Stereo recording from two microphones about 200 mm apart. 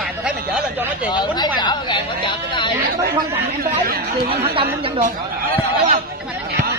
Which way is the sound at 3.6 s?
50° right (ahead or behind).